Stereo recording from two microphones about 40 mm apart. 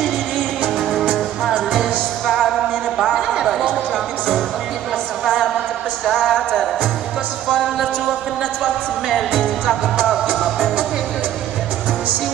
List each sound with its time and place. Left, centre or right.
0.7 s music: centre
2.2 s music: centre
3.3 s a sound: centre
5.2 s a sound: centre
7.4 s music: centre
9.1 s music: centre